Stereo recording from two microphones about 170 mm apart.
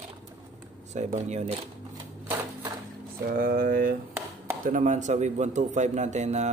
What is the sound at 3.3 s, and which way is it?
A man's voice, 55° right (ahead or behind).